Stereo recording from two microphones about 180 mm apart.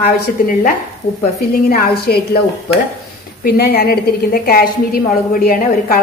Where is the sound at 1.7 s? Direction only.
60° left (ahead or behind).